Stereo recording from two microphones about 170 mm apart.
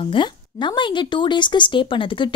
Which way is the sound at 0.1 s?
25° left (ahead or behind).